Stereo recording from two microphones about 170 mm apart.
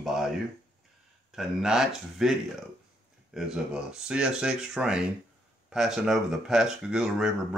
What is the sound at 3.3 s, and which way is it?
Speech, 5° right (ahead or behind).